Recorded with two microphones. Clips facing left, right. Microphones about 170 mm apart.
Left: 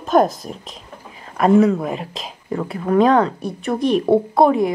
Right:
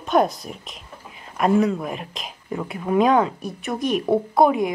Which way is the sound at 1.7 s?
25° left (ahead or behind).